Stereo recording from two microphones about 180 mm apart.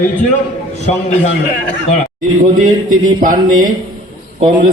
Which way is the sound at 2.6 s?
50° right (ahead or behind).